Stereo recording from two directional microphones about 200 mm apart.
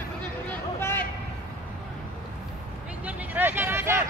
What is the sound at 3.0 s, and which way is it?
Vehicle, 5° right (ahead or behind).